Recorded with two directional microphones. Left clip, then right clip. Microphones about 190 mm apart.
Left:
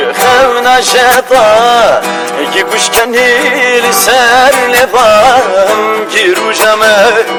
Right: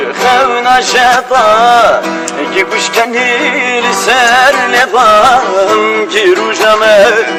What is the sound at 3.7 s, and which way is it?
Music, 20° left (ahead or behind).